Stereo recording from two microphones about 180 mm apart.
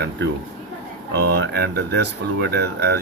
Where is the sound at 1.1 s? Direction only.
65° right (ahead or behind).